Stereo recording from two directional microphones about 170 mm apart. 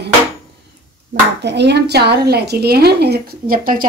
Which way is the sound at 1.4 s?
90° right.